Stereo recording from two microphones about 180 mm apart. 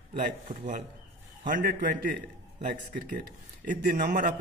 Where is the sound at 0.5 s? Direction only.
45° right (ahead or behind).